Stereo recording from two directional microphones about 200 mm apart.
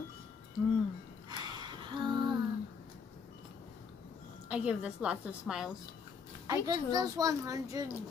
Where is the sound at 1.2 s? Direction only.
20° right (ahead or behind).